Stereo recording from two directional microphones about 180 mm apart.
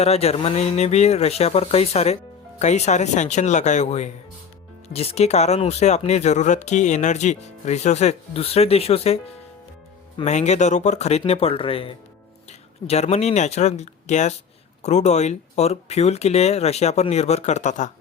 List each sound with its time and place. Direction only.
0.0 s speech: 35° left (ahead or behind)